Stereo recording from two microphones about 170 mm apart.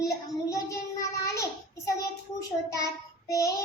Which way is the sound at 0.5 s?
20° left (ahead or behind).